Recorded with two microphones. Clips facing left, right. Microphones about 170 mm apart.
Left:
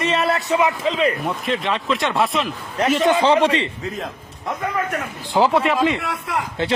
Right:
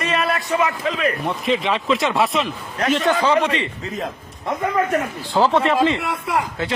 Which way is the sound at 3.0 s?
25° left (ahead or behind).